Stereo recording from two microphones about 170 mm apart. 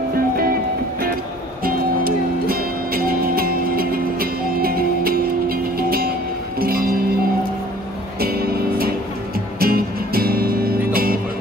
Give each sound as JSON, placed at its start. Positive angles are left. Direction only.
{"t": 1.6, "sound": "music", "side_deg": -60}
{"t": 8.2, "sound": "music", "side_deg": -65}